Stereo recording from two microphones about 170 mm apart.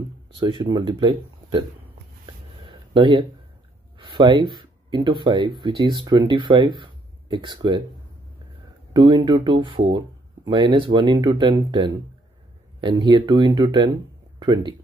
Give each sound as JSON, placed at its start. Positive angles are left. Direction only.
{"t": 0.4, "sound": "speech", "side_deg": -30}
{"t": 2.2, "sound": "a sound", "side_deg": -30}
{"t": 4.1, "sound": "speech", "side_deg": -25}
{"t": 8.9, "sound": "speech", "side_deg": -25}